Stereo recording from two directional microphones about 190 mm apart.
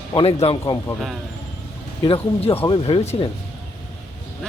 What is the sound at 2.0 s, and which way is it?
Speech, 30° left (ahead or behind).